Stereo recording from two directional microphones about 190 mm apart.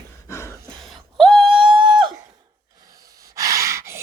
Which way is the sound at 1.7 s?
25° right (ahead or behind).